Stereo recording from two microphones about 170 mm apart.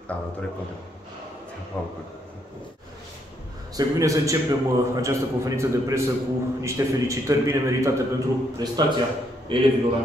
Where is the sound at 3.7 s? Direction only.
20° right (ahead or behind).